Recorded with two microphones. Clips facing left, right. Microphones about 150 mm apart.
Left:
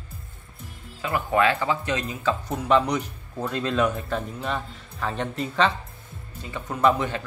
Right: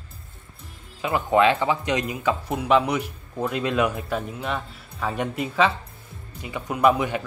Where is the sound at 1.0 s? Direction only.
20° right (ahead or behind).